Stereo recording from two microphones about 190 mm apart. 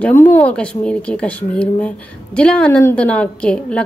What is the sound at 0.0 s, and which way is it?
A woman's voice, 10° left (ahead or behind).